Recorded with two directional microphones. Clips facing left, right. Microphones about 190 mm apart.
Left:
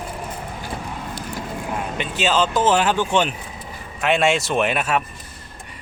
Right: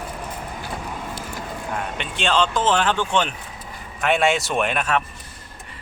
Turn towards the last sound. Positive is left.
turn(degrees=5)  # may be behind; listen again after turning